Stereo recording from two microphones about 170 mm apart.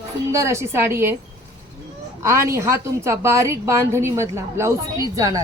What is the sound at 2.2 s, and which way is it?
A woman's voice, 15° right (ahead or behind).